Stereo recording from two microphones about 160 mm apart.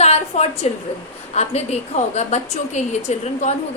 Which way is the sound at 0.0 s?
40° left (ahead or behind).